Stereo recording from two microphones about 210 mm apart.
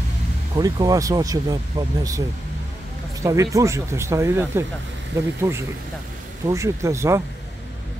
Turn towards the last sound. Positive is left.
turn(degrees=-15)  # may be behind; listen again after turning